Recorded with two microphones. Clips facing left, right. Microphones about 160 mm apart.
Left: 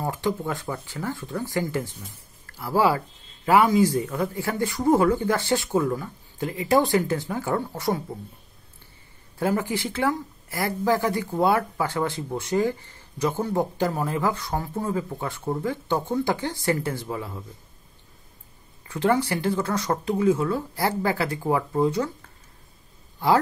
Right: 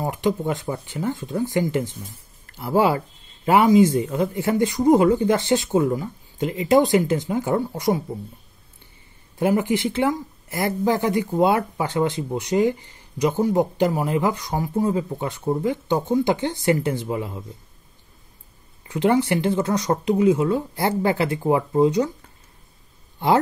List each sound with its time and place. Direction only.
0.0 s speech: 20° right (ahead or behind)
9.4 s speech: 20° right (ahead or behind)
18.9 s speech: 20° right (ahead or behind)
23.1 s a sound: 20° right (ahead or behind)